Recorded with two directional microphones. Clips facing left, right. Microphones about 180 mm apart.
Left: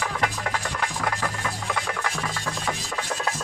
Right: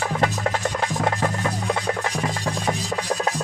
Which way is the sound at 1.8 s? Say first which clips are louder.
Right 5 dB; 35° right (ahead or behind).